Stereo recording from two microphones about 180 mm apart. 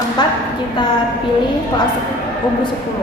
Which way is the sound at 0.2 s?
25° left (ahead or behind).